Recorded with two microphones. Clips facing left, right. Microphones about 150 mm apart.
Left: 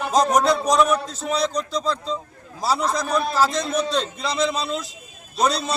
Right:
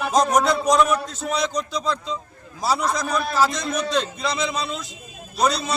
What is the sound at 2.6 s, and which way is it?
Speech, centre (ahead or behind).